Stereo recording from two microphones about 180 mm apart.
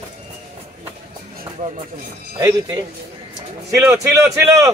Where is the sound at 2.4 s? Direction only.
20° right (ahead or behind).